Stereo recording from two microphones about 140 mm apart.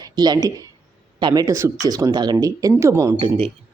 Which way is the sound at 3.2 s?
40° right (ahead or behind).